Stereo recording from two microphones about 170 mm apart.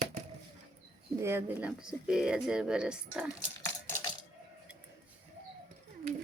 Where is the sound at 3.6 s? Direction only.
15° left (ahead or behind).